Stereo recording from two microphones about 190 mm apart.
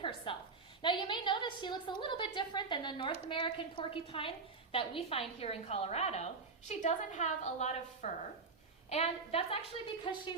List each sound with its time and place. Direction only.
0.3 s a woman's voice: 25° left (ahead or behind)